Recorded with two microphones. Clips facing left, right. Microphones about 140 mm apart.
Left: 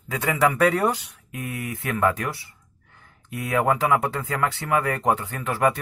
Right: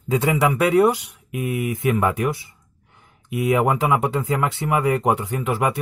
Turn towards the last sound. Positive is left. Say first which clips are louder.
# right 1 dB
turn(degrees=-15)  # may be behind; listen again after turning